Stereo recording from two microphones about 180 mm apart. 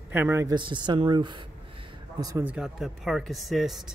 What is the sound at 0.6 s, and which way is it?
Speech, 25° right (ahead or behind).